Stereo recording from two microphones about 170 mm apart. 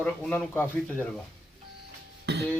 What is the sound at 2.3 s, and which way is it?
Beatboxing, 85° right.